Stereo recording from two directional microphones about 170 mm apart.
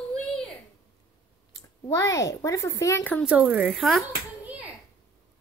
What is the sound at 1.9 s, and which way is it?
Speech, 20° left (ahead or behind).